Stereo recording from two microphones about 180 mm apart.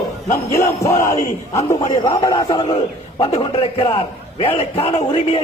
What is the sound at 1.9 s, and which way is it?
A man's voice, 20° left (ahead or behind).